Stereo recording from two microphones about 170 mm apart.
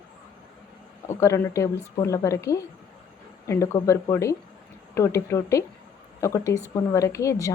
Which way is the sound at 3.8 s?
15° left (ahead or behind).